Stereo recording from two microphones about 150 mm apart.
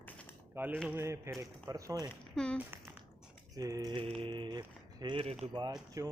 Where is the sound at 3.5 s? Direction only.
25° right (ahead or behind).